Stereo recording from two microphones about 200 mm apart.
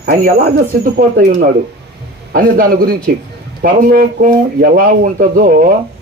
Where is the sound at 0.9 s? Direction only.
45° right (ahead or behind).